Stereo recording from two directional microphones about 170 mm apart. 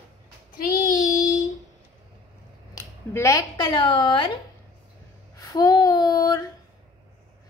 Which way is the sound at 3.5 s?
25° left (ahead or behind).